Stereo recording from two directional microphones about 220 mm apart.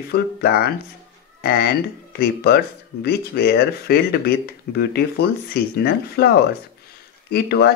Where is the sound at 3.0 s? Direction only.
45° left (ahead or behind).